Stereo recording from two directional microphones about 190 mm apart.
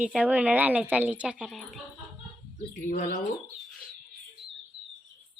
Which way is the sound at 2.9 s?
50° left (ahead or behind).